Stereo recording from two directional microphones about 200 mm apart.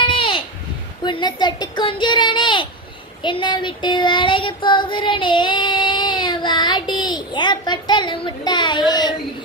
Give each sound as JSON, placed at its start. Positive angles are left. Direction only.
{"t": 0.1, "sound": "a sound", "side_deg": 25}
{"t": 1.0, "sound": "speech", "side_deg": 20}
{"t": 3.2, "sound": "child singing", "side_deg": 25}
{"t": 8.9, "sound": "speech", "side_deg": 20}